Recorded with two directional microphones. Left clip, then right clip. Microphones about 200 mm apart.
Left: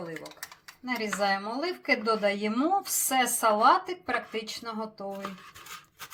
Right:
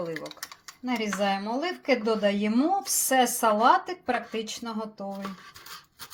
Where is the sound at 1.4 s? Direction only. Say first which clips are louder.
Right 2 dB; 35° right (ahead or behind).